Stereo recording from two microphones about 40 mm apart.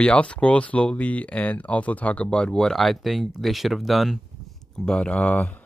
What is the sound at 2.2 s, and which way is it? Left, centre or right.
Speech, centre.